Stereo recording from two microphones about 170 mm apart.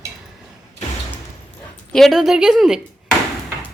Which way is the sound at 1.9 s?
Centre (ahead or behind).